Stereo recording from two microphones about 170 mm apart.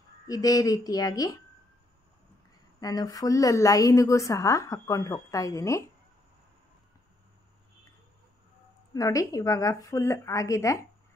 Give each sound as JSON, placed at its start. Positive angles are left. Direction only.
{"t": 0.3, "sound": "a woman's voice", "side_deg": 20}
{"t": 2.8, "sound": "a woman's voice", "side_deg": 20}
{"t": 8.9, "sound": "a woman's voice", "side_deg": 20}